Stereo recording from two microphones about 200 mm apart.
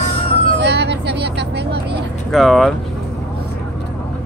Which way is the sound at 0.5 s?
60° right (ahead or behind).